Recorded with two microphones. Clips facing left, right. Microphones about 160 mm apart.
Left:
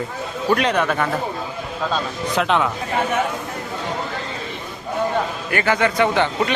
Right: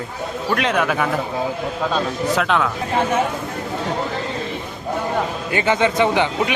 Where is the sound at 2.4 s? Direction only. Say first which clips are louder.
Left 2 dB; centre (ahead or behind).